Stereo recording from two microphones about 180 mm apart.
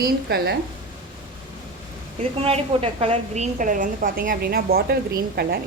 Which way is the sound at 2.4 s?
35° right (ahead or behind).